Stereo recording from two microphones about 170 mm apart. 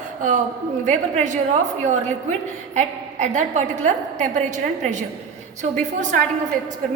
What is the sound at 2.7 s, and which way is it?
A woman's voice, 45° right (ahead or behind).